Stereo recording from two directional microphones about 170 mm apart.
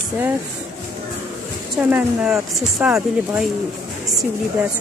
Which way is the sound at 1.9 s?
5° right (ahead or behind).